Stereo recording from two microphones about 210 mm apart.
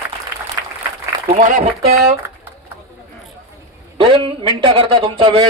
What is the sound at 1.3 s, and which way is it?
Speech, 35° right (ahead or behind).